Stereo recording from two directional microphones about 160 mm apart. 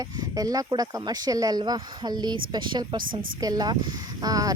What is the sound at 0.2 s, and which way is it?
Speech, 25° right (ahead or behind).